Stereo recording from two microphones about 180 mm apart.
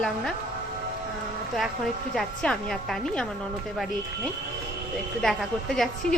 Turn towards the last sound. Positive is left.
turn(degrees=0)  # may be behind; listen again after turning